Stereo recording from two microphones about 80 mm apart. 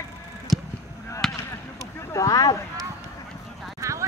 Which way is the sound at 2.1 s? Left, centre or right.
Left.